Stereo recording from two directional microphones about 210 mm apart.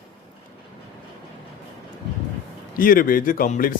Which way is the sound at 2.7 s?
40° left (ahead or behind).